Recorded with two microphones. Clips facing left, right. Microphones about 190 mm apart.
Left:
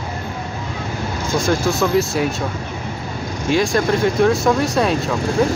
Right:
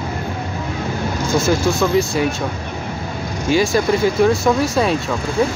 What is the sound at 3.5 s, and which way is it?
Speech, 5° right (ahead or behind).